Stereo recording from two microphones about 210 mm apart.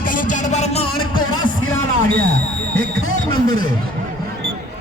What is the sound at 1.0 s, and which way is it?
Music, 75° left (ahead or behind).